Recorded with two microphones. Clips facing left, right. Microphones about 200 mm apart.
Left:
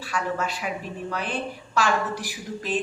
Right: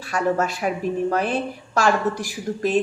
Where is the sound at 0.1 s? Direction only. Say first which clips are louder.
Right 6 dB; 45° right (ahead or behind).